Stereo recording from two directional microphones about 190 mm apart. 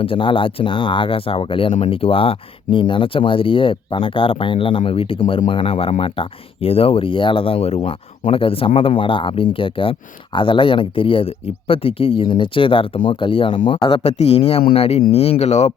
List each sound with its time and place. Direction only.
0.0 s speech: 25° left (ahead or behind)